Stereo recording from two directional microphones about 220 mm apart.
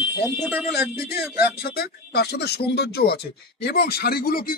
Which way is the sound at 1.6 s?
45° left (ahead or behind).